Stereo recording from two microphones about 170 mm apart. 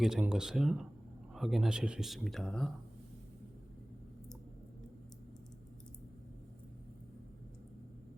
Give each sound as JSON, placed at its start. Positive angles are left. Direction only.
{"t": 0.0, "sound": "speech", "side_deg": -5}